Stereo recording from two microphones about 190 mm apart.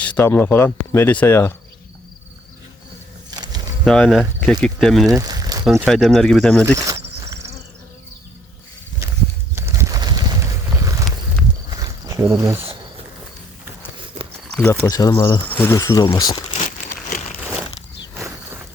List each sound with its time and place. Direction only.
0.0 s speech: 10° left (ahead or behind)
3.3 s a sound: 20° right (ahead or behind)
3.8 s speech: centre (ahead or behind)
5.0 s a sound: 20° right (ahead or behind)
5.8 s speech: 5° left (ahead or behind)
6.7 s cricket: 15° right (ahead or behind)
9.0 s walk: 15° right (ahead or behind)
9.6 s bird: 15° right (ahead or behind)
11.7 s cricket: 20° right (ahead or behind)
14.5 s speech: 5° left (ahead or behind)
14.8 s speech: 20° left (ahead or behind)
15.4 s speech: 10° left (ahead or behind)
16.6 s a sound: 45° left (ahead or behind)
18.1 s a sound: 10° right (ahead or behind)